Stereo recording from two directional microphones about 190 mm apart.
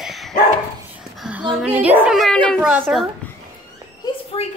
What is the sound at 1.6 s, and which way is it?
Speech, 5° right (ahead or behind).